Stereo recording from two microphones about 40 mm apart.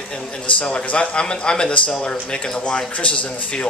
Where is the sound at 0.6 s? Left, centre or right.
Left.